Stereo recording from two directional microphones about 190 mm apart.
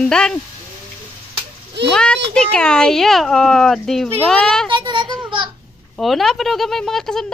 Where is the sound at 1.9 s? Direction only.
5° left (ahead or behind).